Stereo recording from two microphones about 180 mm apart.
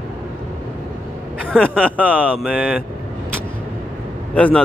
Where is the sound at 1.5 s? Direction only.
5° right (ahead or behind).